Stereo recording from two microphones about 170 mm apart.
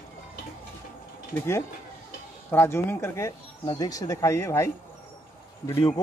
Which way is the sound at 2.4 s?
15° left (ahead or behind).